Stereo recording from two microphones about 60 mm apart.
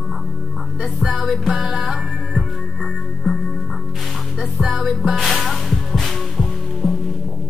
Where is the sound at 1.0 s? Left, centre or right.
Centre.